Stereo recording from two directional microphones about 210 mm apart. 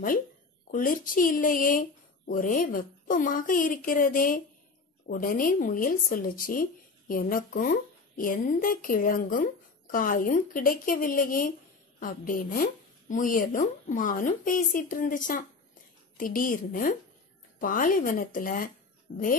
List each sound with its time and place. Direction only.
0.7 s speech: 40° left (ahead or behind)